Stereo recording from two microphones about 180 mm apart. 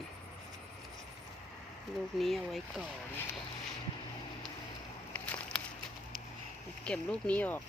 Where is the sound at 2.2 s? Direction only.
Centre (ahead or behind).